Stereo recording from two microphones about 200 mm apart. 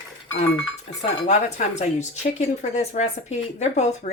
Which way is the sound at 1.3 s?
35° left (ahead or behind).